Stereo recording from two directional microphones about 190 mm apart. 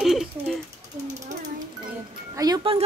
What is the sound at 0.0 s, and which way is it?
Ratchet, centre (ahead or behind).